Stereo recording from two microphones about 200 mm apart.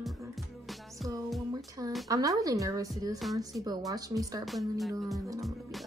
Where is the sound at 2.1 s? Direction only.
15° right (ahead or behind).